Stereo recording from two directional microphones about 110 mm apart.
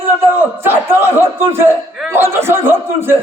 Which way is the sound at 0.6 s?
20° right (ahead or behind).